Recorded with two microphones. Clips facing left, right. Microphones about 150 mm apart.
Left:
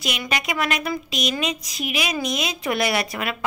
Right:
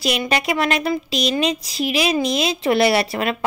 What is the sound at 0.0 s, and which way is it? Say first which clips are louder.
A woman's voice: right 6 dB; 35° right (ahead or behind).